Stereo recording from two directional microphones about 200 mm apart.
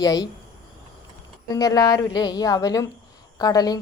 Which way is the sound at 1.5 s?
20° left (ahead or behind).